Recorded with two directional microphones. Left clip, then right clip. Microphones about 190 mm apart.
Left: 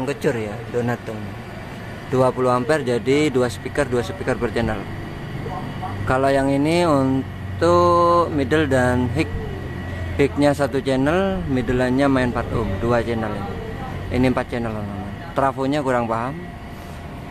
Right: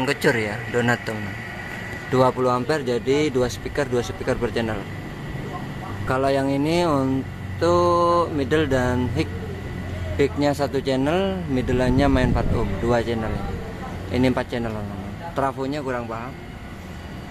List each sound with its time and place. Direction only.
0.0 s speech: centre (ahead or behind)
2.1 s speech: 5° left (ahead or behind)
6.0 s speech: 5° left (ahead or behind); by 16.3 s 25° left (ahead or behind)